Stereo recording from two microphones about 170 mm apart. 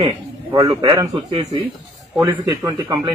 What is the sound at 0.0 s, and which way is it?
A man's voice, 25° right (ahead or behind).